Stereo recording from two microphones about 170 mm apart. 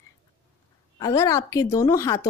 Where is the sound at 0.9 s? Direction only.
20° left (ahead or behind).